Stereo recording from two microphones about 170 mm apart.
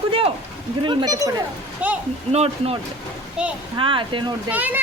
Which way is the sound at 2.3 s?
35° right (ahead or behind).